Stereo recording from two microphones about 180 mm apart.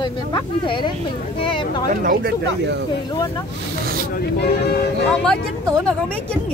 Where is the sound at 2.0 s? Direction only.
60° right (ahead or behind).